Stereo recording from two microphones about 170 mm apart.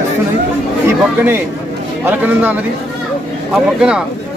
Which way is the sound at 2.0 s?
10° right (ahead or behind).